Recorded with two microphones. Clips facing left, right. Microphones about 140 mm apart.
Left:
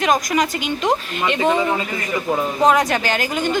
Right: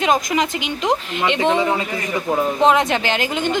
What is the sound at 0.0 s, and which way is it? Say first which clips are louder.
A woman's voice: even; 25° right (ahead or behind).